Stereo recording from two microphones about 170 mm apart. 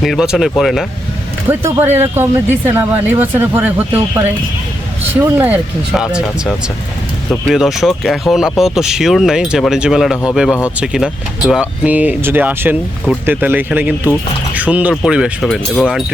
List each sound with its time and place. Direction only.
0.0 s speech: centre (ahead or behind)
1.5 s speech: 15° right (ahead or behind)
5.2 s speech: 15° right (ahead or behind)